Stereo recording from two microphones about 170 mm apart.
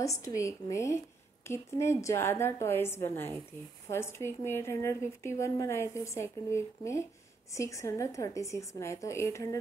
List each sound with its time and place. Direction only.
0.0 s a woman's voice: 20° left (ahead or behind)